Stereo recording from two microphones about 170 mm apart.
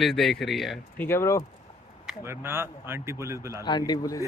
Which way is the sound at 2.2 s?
15° right (ahead or behind).